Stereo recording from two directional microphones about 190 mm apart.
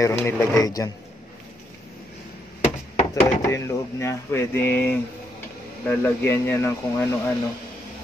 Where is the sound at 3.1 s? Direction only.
15° left (ahead or behind).